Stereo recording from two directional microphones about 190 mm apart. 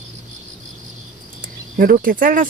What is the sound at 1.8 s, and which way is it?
Speech, 45° right (ahead or behind).